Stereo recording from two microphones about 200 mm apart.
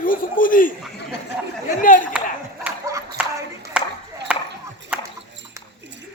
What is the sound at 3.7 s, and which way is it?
Chop, 5° right (ahead or behind).